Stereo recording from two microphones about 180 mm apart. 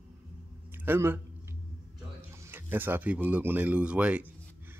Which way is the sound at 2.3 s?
15° right (ahead or behind).